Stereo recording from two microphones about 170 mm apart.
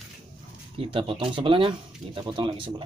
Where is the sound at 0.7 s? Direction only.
30° right (ahead or behind).